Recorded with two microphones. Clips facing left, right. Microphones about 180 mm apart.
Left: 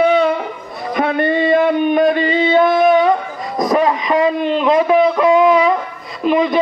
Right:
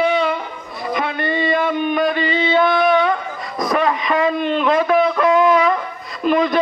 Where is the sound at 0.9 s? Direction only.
50° left (ahead or behind).